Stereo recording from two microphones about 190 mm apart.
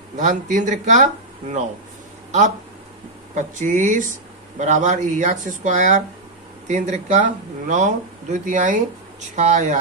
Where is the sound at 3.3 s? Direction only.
40° right (ahead or behind).